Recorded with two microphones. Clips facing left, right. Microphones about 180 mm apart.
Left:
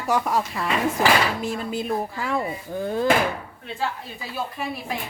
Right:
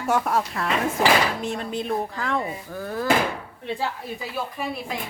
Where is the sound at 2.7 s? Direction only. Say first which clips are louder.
Left 4 dB; 20° left (ahead or behind).